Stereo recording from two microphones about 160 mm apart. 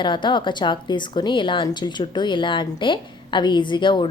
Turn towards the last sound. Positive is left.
turn(degrees=30)  # may be behind; listen again after turning